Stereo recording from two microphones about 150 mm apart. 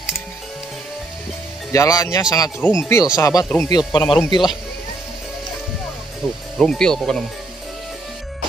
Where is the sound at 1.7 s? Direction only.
25° left (ahead or behind).